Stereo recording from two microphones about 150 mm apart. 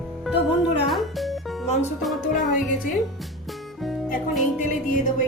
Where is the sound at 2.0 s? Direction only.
Centre (ahead or behind).